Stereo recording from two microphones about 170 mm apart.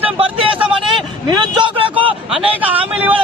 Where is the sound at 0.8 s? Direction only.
30° right (ahead or behind).